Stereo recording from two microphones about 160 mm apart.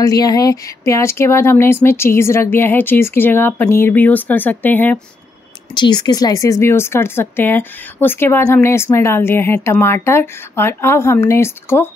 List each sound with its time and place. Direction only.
0.0 s speech: 25° left (ahead or behind)
5.8 s speech: 25° left (ahead or behind)